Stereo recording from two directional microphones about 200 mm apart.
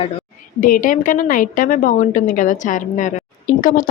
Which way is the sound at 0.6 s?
45° left (ahead or behind).